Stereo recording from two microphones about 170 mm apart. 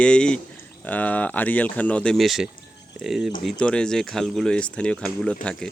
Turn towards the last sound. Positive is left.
turn(degrees=5)  # may be behind; listen again after turning